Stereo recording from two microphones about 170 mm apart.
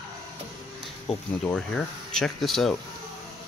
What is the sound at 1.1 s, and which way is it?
Speech, 5° left (ahead or behind).